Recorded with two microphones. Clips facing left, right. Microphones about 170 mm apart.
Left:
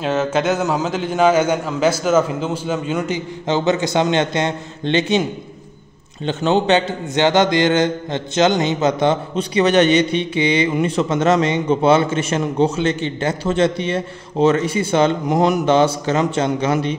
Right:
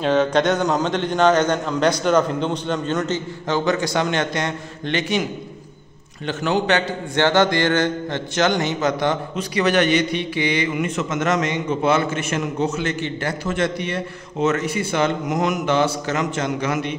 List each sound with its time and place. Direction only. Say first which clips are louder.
0.0 s a man's voice: right 1 dB; 5° left (ahead or behind); by 5.2 s 25° left (ahead or behind)
6.2 s a man's voice: left 4 dB; 25° left (ahead or behind)